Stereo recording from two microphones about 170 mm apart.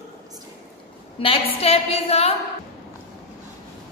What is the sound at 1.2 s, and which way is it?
A woman's voice, 35° left (ahead or behind).